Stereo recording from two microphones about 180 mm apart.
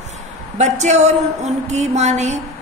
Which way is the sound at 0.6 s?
40° right (ahead or behind).